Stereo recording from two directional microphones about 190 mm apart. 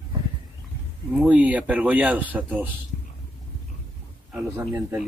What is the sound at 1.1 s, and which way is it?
Speech, 5° right (ahead or behind).